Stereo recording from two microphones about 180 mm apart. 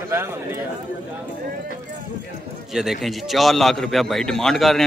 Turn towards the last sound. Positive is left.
turn(degrees=0)  # may be behind; listen again after turning